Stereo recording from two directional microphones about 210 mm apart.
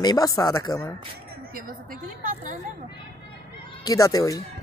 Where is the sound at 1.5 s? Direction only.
40° right (ahead or behind).